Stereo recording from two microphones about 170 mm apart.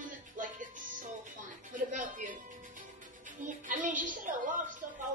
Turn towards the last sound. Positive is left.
turn(degrees=-50)  # may be behind; listen again after turning